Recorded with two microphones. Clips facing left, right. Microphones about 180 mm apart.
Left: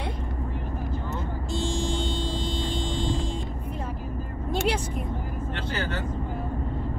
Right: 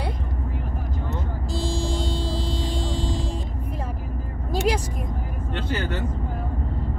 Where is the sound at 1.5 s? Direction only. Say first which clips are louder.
Right 1 dB; 35° right (ahead or behind).